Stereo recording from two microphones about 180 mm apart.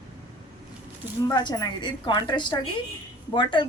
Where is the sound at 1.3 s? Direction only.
20° left (ahead or behind).